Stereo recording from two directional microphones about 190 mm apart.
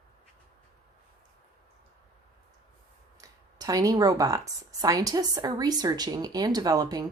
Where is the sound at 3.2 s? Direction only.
20° right (ahead or behind).